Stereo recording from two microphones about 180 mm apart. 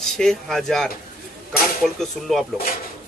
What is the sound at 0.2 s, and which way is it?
Speech, centre (ahead or behind).